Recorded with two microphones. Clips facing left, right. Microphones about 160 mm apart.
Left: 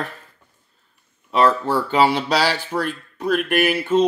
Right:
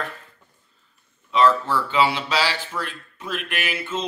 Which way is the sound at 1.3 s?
40° left (ahead or behind).